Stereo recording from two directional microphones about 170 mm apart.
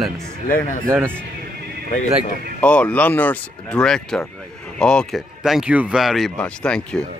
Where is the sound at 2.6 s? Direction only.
10° left (ahead or behind).